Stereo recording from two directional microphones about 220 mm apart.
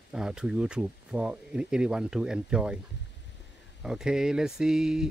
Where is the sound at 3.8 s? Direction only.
5° right (ahead or behind).